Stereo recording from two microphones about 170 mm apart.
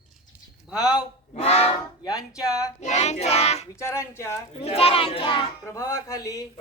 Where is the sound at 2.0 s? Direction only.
20° left (ahead or behind).